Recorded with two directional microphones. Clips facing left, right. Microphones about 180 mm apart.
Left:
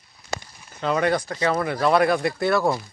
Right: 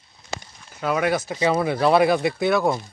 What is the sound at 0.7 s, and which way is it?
Speech, 5° right (ahead or behind).